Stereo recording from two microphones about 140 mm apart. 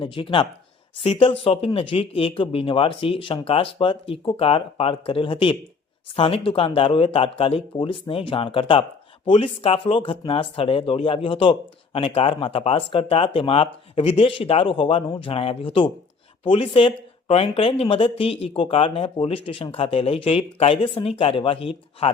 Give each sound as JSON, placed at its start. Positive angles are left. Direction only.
{"t": 0.0, "sound": "speech", "side_deg": 35}